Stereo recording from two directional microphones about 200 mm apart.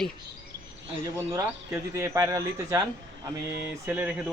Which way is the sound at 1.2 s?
15° right (ahead or behind).